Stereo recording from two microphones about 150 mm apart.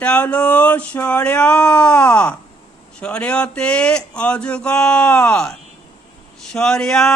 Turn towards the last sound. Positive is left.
turn(degrees=5)  # may be behind; listen again after turning